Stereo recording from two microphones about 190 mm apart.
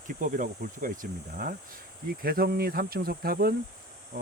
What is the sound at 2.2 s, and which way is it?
Speech, 50° right (ahead or behind).